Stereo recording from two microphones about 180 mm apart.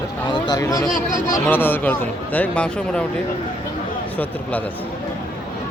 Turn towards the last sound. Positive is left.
turn(degrees=10)  # may be behind; listen again after turning